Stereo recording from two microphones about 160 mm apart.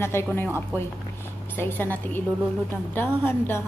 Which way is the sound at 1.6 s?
10° left (ahead or behind).